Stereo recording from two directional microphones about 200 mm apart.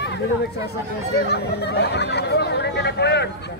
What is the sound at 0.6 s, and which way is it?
Speech, 55° left (ahead or behind).